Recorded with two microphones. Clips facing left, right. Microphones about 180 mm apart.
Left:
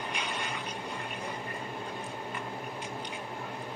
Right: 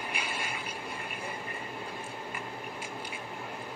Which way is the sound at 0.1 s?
5° right (ahead or behind).